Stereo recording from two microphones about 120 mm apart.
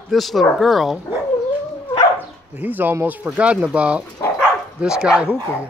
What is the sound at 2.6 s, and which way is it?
Speech, 15° right (ahead or behind).